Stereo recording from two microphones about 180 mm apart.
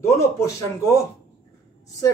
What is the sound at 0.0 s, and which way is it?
Speech, 15° left (ahead or behind).